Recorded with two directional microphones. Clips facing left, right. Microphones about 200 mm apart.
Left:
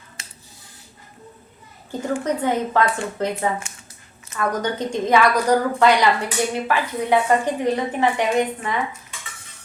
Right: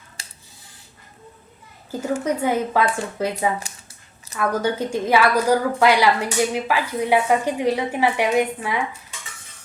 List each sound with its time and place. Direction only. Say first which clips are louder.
1.9 s a child's voice: even; 5° right (ahead or behind)